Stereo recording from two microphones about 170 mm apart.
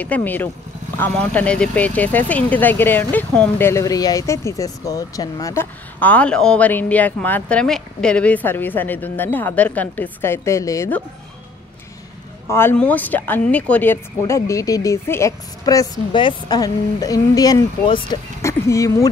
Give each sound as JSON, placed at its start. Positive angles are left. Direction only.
{"t": 0.0, "sound": "speech", "side_deg": 10}
{"t": 12.4, "sound": "speech", "side_deg": 15}
{"t": 18.4, "sound": "speech", "side_deg": 15}